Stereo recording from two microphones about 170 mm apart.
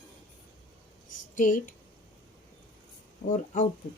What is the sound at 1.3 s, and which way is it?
Speech, 50° left (ahead or behind).